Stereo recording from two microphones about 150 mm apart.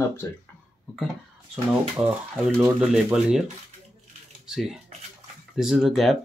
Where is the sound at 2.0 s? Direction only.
15° right (ahead or behind).